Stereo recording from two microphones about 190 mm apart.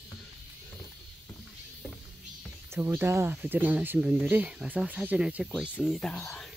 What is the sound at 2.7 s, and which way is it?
Speech, 15° right (ahead or behind).